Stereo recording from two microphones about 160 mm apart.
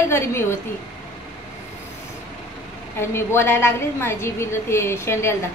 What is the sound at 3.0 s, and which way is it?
A woman's voice, 15° left (ahead or behind).